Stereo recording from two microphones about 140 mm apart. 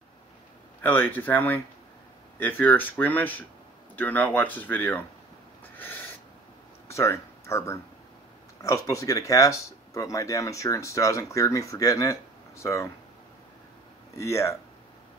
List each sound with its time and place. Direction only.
0.8 s speech: 15° left (ahead or behind)
5.8 s owl: 15° left (ahead or behind)
6.9 s speech: 20° left (ahead or behind)
14.1 s speech: 20° left (ahead or behind)